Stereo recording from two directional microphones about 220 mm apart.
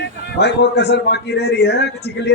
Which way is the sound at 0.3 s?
50° left (ahead or behind).